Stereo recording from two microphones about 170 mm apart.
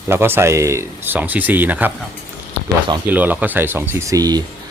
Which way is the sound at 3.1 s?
10° right (ahead or behind).